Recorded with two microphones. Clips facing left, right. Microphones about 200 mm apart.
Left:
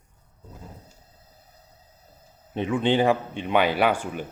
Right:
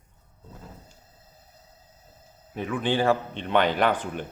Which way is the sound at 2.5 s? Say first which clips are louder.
Left 4 dB; 25° left (ahead or behind).